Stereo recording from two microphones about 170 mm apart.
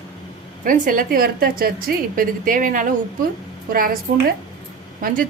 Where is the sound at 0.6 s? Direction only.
55° right (ahead or behind).